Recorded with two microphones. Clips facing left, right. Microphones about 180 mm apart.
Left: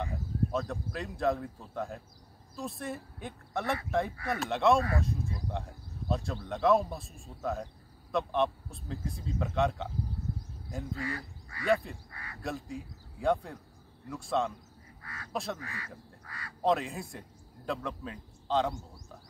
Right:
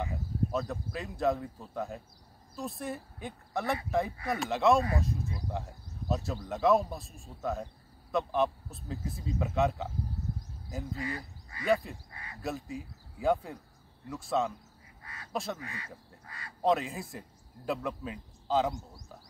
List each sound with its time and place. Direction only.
0.0 s speech: centre (ahead or behind)
11.0 s speech: 20° right (ahead or behind)
11.6 s speech: centre (ahead or behind)
12.1 s a sound: 20° right (ahead or behind)
12.4 s speech: centre (ahead or behind)
15.6 s speech: 20° right (ahead or behind)
16.6 s a man's voice: centre (ahead or behind)